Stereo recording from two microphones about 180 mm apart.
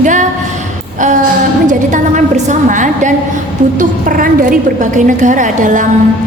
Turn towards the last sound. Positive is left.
turn(degrees=-45)  # may be behind; listen again after turning